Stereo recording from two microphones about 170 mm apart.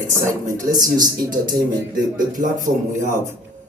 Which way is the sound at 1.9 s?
50° right (ahead or behind).